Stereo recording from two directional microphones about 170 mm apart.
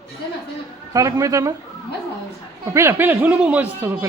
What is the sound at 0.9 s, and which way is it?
Speech, 20° right (ahead or behind).